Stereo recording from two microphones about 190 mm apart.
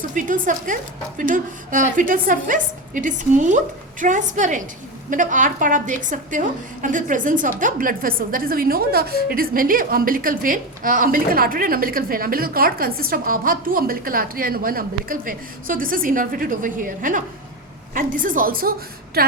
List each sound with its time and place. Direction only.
0.1 s a woman's voice: 45° right (ahead or behind)